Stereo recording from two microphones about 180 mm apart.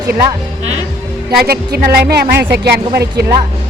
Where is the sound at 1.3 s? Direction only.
60° right (ahead or behind).